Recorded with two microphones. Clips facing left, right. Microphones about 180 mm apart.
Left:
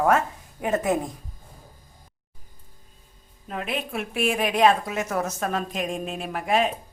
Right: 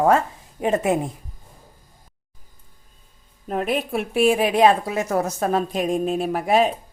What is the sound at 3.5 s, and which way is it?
A woman's voice, 45° right (ahead or behind).